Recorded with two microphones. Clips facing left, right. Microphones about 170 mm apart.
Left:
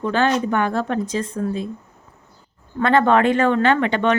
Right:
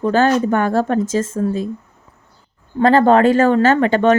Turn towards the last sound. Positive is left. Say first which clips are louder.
# right 5 dB
turn(degrees=-40)  # may be behind; listen again after turning